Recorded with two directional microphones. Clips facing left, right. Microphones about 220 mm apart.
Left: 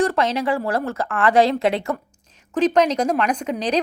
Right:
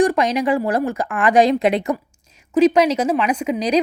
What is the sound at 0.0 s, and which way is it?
A woman's voice, 15° right (ahead or behind).